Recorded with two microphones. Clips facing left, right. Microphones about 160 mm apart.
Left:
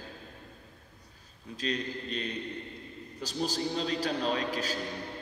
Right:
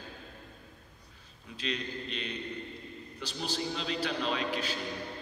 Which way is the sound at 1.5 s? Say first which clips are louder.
Left 3 dB; 40° left (ahead or behind).